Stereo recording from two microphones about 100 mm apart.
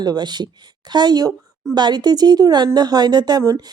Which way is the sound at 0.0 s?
45° right (ahead or behind).